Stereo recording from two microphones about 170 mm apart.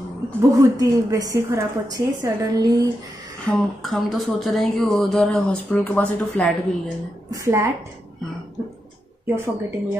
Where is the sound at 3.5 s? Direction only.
Centre (ahead or behind).